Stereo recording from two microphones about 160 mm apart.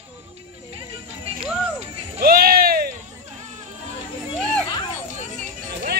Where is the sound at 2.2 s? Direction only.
70° right (ahead or behind).